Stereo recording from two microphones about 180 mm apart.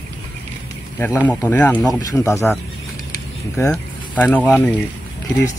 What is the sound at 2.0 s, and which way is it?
Speech, 20° left (ahead or behind).